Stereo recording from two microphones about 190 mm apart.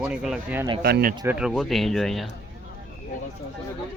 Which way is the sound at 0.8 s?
55° right (ahead or behind).